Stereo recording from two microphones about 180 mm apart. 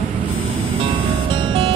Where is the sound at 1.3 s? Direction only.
30° right (ahead or behind).